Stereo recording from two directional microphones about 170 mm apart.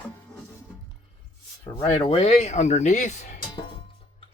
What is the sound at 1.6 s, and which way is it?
Speech, 35° left (ahead or behind).